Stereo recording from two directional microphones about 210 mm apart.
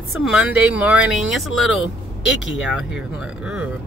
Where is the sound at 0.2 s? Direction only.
5° right (ahead or behind).